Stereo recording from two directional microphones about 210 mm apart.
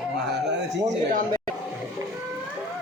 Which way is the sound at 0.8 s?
40° right (ahead or behind).